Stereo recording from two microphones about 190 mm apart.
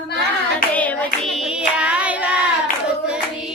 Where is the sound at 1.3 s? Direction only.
Centre (ahead or behind).